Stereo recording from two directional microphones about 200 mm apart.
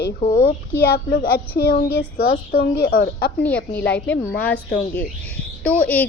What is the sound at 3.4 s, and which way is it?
A woman's voice, 10° left (ahead or behind).